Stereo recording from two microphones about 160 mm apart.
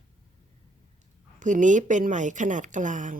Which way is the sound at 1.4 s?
50° right (ahead or behind).